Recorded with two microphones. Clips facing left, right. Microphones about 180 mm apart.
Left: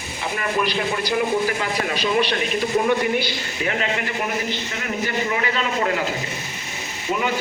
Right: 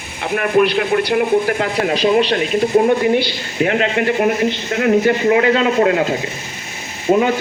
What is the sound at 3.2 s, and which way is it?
A man's voice, 55° right (ahead or behind).